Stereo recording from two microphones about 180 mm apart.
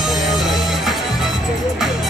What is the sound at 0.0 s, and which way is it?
Music, centre (ahead or behind).